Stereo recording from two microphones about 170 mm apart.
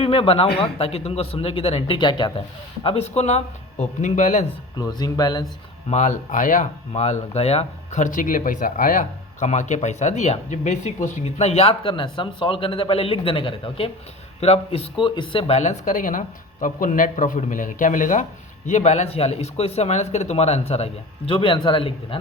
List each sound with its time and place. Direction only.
0.0 s speech: 30° left (ahead or behind)
2.8 s speech: 40° left (ahead or behind)
4.8 s speech: 25° left (ahead or behind)
5.9 s speech: 45° left (ahead or behind)
6.9 s speech: 40° left (ahead or behind)